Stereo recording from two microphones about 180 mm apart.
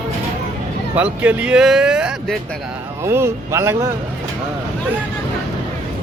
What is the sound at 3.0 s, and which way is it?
Speech, 15° right (ahead or behind).